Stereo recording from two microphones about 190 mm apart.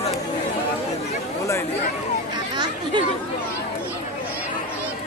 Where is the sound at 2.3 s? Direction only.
20° right (ahead or behind).